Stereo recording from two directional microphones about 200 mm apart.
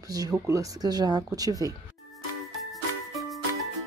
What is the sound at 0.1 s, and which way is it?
Speech, 15° right (ahead or behind).